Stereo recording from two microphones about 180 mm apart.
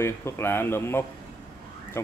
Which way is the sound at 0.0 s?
15° left (ahead or behind).